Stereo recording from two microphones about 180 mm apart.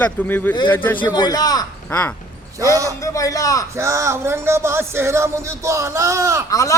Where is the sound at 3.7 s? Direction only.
15° right (ahead or behind).